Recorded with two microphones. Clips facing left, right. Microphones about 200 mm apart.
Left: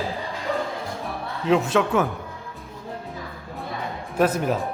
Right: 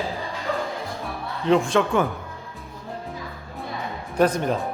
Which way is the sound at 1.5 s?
5° left (ahead or behind).